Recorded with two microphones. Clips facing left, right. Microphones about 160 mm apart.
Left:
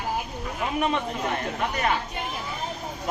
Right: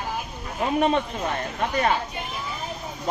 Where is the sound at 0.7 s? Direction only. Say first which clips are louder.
Right 4 dB; 30° right (ahead or behind).